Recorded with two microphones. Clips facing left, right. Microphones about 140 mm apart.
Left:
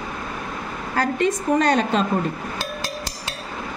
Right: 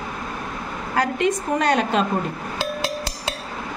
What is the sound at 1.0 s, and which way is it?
A woman's voice, 10° right (ahead or behind).